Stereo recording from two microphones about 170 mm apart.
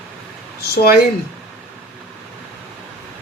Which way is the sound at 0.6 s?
65° left (ahead or behind).